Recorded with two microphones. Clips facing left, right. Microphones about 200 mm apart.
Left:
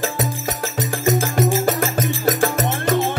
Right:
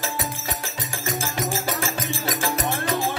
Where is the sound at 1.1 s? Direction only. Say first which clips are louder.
Left 9 dB; 50° left (ahead or behind).